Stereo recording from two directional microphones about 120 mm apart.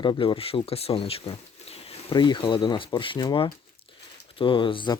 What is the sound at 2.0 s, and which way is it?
Speech, 40° left (ahead or behind).